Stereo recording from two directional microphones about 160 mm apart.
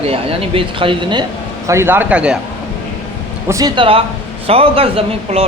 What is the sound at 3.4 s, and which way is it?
Speech, 25° right (ahead or behind).